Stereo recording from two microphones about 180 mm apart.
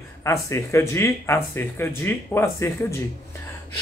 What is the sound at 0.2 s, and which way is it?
A man's voice, 15° left (ahead or behind).